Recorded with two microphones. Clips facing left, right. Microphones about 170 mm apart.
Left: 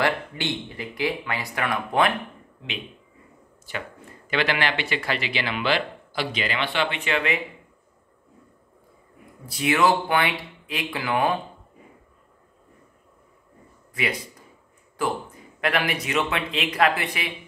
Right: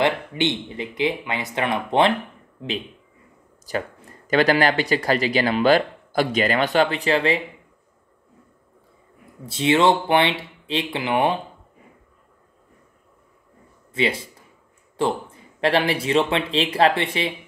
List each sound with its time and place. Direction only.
0.0 s speech: 20° right (ahead or behind)
3.7 s speech: 40° right (ahead or behind)
9.5 s speech: 25° right (ahead or behind)
13.9 s speech: 25° right (ahead or behind)